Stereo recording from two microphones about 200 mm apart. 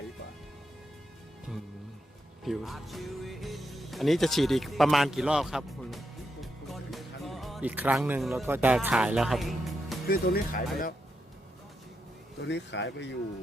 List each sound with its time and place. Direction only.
2.4 s speech: centre (ahead or behind)
6.4 s music: centre (ahead or behind)
8.4 s speech: 10° right (ahead or behind)
10.1 s speech: 45° left (ahead or behind)
12.4 s speech: 60° left (ahead or behind)